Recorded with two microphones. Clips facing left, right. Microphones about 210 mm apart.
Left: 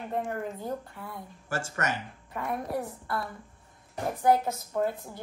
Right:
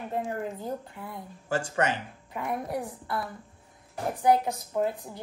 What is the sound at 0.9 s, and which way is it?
Speech, 20° right (ahead or behind).